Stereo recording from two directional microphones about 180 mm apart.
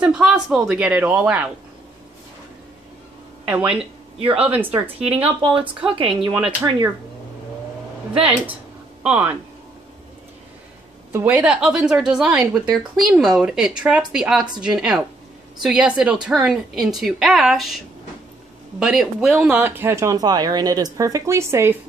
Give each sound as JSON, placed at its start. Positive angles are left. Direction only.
{"t": 0.0, "sound": "a woman's voice", "side_deg": -5}
{"t": 3.4, "sound": "a woman's voice", "side_deg": -10}
{"t": 5.9, "sound": "speech", "side_deg": -30}
{"t": 6.3, "sound": "speech", "side_deg": -15}
{"t": 8.2, "sound": "speech", "side_deg": -30}
{"t": 9.0, "sound": "speech", "side_deg": -5}
{"t": 11.1, "sound": "a woman's voice", "side_deg": -10}